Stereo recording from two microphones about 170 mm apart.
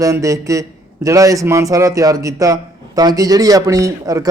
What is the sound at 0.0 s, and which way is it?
A man's voice, 20° right (ahead or behind).